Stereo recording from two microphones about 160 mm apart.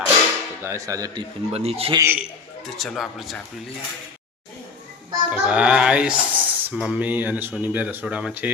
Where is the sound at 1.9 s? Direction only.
10° right (ahead or behind).